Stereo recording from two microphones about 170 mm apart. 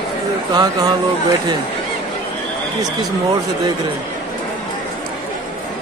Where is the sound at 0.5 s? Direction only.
25° right (ahead or behind).